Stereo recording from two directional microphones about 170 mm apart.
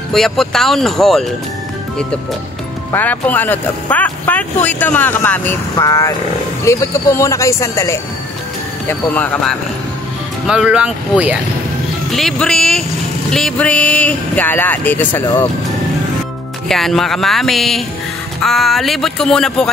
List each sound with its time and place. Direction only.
0.1 s music: centre (ahead or behind)
2.9 s speech: 10° left (ahead or behind)
10.4 s speech: 5° right (ahead or behind); by 15.4 s 10° left (ahead or behind)
16.6 s music: centre (ahead or behind)